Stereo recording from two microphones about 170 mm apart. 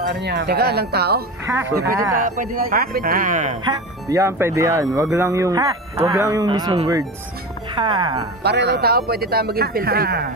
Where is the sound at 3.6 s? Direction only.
20° right (ahead or behind).